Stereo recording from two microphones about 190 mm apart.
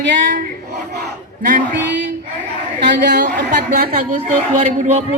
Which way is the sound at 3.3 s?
50° right (ahead or behind).